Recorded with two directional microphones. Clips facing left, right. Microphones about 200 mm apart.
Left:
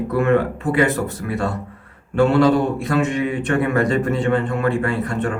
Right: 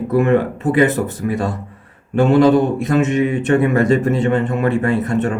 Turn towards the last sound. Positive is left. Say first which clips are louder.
# right 4 dB
turn(degrees=-20)  # may be behind; listen again after turning